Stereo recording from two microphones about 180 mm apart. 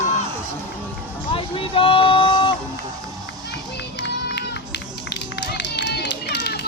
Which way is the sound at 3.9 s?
70° left (ahead or behind).